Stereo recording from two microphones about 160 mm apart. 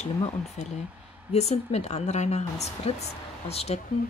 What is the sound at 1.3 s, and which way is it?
Speech, 40° left (ahead or behind).